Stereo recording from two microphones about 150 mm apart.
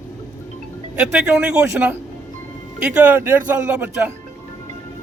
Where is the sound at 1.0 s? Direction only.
10° right (ahead or behind).